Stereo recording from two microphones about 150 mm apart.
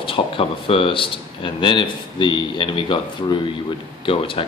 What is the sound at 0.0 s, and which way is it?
Speech, 35° left (ahead or behind).